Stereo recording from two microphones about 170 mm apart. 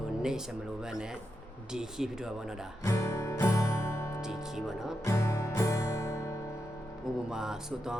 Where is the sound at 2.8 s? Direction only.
15° left (ahead or behind).